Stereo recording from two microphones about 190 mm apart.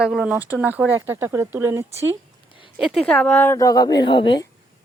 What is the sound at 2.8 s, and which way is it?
Speech, centre (ahead or behind).